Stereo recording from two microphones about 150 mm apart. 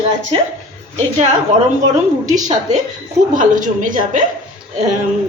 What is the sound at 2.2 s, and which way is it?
A woman's voice, 55° right (ahead or behind).